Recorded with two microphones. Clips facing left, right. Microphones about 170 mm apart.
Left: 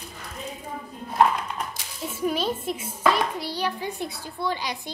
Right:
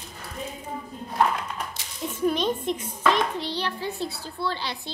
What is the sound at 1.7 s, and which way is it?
A child's voice, 10° left (ahead or behind).